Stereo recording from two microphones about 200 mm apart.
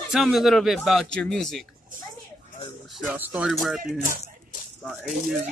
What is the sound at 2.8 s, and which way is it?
Speech, centre (ahead or behind).